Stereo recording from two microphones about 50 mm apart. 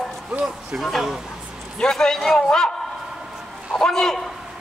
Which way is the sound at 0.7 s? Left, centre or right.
Centre.